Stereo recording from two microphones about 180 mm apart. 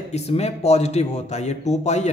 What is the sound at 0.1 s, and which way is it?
A man's voice, 35° left (ahead or behind).